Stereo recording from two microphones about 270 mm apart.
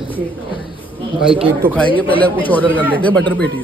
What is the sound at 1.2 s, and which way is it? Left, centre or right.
Speech, centre.